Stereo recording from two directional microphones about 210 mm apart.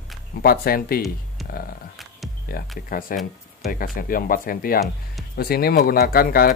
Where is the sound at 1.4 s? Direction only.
Centre (ahead or behind).